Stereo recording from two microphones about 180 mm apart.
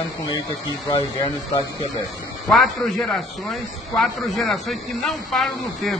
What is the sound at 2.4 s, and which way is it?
A man's voice, centre (ahead or behind).